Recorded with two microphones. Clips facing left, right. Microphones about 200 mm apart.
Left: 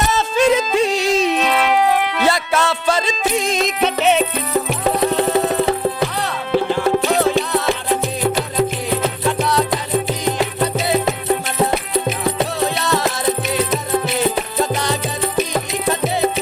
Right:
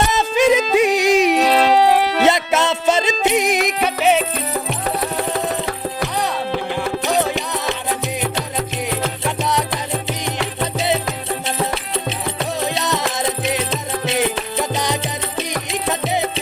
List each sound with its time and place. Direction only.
0.1 s music: 15° right (ahead or behind)
1.5 s music: 35° right (ahead or behind)
2.2 s music: 20° right (ahead or behind)
9.4 s music: 20° right (ahead or behind)
10.1 s music: 20° left (ahead or behind)
12.6 s music: 20° right (ahead or behind)